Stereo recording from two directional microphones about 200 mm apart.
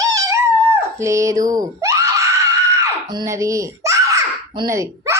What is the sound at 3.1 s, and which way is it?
Babbling, 15° right (ahead or behind).